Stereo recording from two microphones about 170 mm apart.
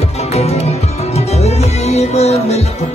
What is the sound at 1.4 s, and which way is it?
Music, 40° left (ahead or behind).